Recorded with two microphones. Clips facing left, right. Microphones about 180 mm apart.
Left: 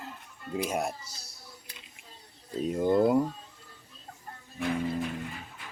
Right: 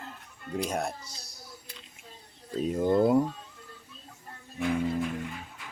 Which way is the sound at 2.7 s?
Centre (ahead or behind).